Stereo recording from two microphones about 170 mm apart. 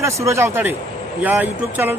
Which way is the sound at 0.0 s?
15° right (ahead or behind).